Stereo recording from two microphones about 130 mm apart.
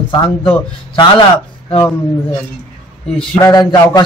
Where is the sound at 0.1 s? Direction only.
35° left (ahead or behind).